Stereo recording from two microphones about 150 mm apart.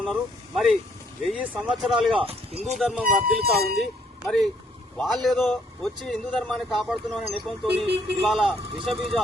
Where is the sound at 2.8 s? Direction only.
Centre (ahead or behind).